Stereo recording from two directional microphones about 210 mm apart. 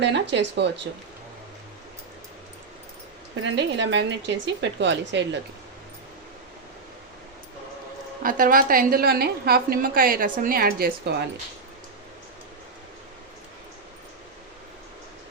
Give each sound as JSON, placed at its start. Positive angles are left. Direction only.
{"t": 0.0, "sound": "a woman's voice", "side_deg": -55}
{"t": 3.4, "sound": "a woman's voice", "side_deg": -55}
{"t": 8.2, "sound": "a woman's voice", "side_deg": -40}